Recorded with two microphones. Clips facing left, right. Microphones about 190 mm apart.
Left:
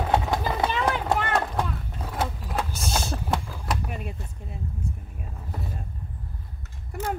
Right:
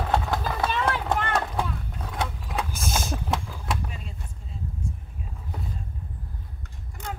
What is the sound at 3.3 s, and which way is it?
Vehicle, centre (ahead or behind).